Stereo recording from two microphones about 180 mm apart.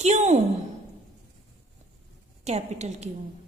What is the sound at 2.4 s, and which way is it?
Speech, 35° right (ahead or behind).